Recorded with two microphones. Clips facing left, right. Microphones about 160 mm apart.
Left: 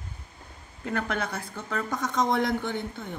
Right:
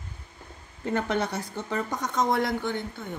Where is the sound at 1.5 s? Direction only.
15° right (ahead or behind); by 3.0 s centre (ahead or behind).